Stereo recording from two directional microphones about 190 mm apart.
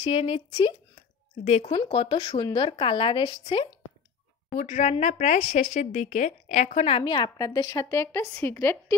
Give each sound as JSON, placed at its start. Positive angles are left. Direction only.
{"t": 0.0, "sound": "a woman's voice", "side_deg": 30}
{"t": 1.4, "sound": "a woman's voice", "side_deg": 35}
{"t": 4.6, "sound": "speech", "side_deg": 40}